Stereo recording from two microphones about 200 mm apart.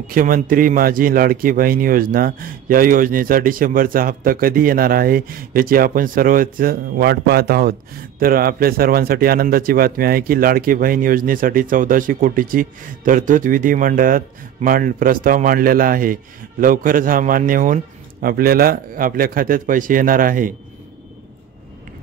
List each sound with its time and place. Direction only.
0.1 s speech: 45° right (ahead or behind)